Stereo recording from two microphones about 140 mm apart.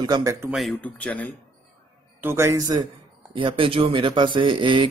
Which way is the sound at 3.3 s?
40° right (ahead or behind).